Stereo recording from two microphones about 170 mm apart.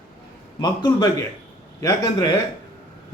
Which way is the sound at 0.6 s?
25° left (ahead or behind).